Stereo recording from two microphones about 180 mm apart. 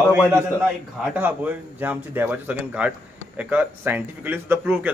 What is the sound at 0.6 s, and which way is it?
A man's voice, 10° right (ahead or behind).